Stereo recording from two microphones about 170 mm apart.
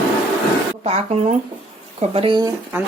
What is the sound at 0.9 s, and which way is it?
Speech, 40° right (ahead or behind).